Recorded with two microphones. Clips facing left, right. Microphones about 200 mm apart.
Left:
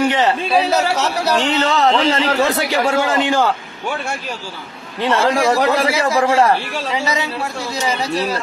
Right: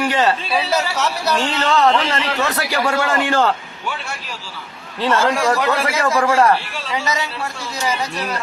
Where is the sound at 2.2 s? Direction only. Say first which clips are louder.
Left 5 dB; 35° left (ahead or behind).